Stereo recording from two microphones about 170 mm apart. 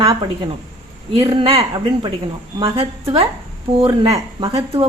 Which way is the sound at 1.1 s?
30° right (ahead or behind).